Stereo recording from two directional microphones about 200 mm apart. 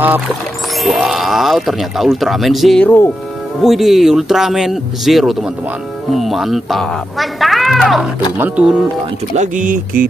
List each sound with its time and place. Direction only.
0.8 s speech: centre (ahead or behind)
9.3 s speech: 40° right (ahead or behind)